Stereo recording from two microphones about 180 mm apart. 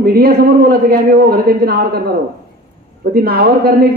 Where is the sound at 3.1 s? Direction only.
60° right (ahead or behind).